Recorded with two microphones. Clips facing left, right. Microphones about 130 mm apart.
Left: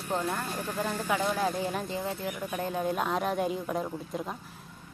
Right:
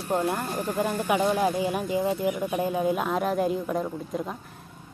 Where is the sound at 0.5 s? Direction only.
50° right (ahead or behind).